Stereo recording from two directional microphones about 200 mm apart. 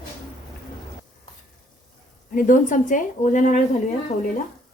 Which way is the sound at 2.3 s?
40° left (ahead or behind).